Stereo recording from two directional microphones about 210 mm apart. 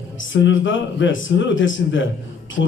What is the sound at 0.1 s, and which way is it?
A man's voice, 65° left (ahead or behind).